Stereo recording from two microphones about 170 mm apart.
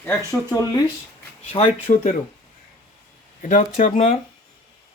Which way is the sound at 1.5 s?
40° left (ahead or behind).